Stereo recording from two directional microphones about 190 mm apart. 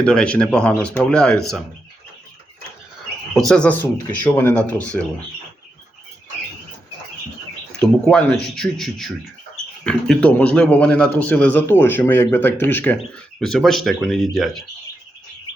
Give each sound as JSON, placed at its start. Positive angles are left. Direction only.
{"t": 0.0, "sound": "speech", "side_deg": 5}
{"t": 3.3, "sound": "a man's voice", "side_deg": 5}
{"t": 7.8, "sound": "a man's voice", "side_deg": 5}